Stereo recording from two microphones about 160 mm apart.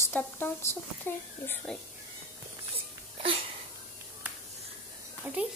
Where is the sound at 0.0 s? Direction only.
10° left (ahead or behind).